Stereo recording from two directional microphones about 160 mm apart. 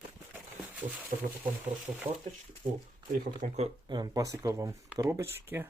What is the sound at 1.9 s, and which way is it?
Speech, 25° right (ahead or behind).